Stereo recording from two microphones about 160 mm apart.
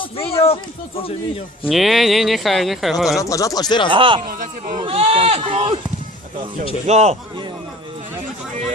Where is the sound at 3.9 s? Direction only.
30° right (ahead or behind).